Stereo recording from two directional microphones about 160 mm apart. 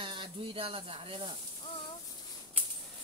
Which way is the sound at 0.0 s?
30° right (ahead or behind).